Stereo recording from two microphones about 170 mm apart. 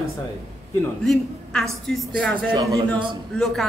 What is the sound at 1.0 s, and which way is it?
A woman's voice, 5° left (ahead or behind).